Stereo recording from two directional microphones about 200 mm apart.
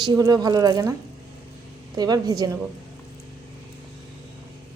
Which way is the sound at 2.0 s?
20° right (ahead or behind).